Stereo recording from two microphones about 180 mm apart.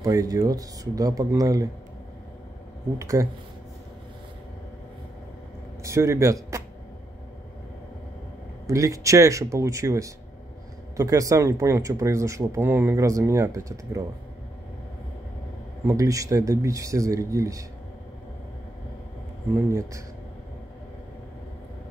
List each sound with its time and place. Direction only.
0.0 s speech: 20° right (ahead or behind)
3.0 s speech: 15° right (ahead or behind)
5.9 s a man's voice: 15° right (ahead or behind)
8.6 s speech: 15° right (ahead or behind)
15.8 s speech: 15° right (ahead or behind)
19.5 s speech: 15° right (ahead or behind)